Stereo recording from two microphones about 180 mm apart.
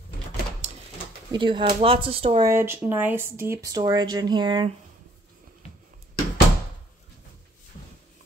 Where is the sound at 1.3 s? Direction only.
25° right (ahead or behind).